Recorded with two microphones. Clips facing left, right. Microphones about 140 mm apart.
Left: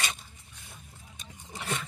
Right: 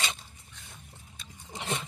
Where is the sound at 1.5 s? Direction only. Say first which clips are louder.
Right 1 dB; 20° right (ahead or behind).